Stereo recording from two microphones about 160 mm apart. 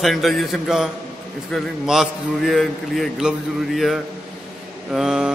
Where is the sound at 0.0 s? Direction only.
Centre (ahead or behind).